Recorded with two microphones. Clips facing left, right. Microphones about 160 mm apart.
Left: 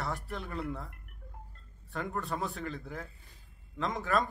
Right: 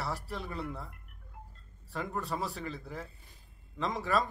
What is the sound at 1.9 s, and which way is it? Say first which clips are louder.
A man's voice: even; centre (ahead or behind).